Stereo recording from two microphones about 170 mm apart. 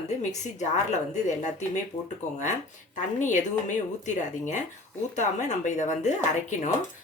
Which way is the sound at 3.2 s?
45° left (ahead or behind).